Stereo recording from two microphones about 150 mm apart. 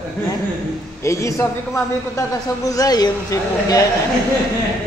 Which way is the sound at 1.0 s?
20° left (ahead or behind).